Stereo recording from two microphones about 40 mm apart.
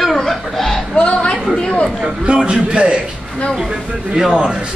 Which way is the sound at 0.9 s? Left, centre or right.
Left.